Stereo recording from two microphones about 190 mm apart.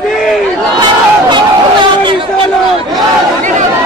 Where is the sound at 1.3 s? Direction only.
25° right (ahead or behind).